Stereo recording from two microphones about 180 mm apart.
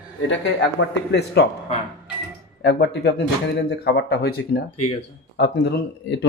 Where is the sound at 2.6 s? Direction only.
70° left (ahead or behind).